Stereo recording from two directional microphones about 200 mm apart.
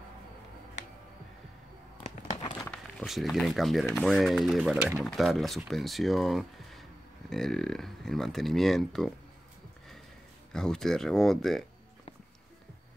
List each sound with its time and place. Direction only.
2.0 s a sound: 30° left (ahead or behind)
2.7 s speech: centre (ahead or behind)
10.5 s speech: 5° left (ahead or behind)